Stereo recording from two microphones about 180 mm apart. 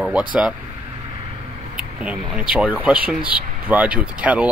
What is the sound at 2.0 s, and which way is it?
Speech, 5° right (ahead or behind).